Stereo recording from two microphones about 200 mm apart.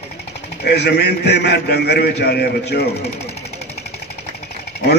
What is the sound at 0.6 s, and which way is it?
A man's voice, 55° left (ahead or behind).